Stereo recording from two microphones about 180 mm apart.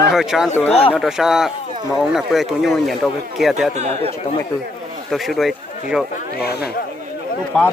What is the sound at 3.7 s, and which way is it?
Speech, 40° right (ahead or behind).